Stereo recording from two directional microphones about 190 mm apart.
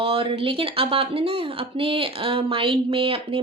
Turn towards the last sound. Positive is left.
turn(degrees=-30)  # may be behind; listen again after turning